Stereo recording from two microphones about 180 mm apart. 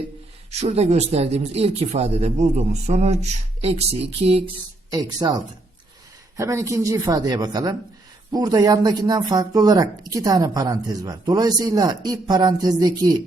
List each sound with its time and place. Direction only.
0.5 s speech: 35° right (ahead or behind)
4.9 s speech: 20° right (ahead or behind)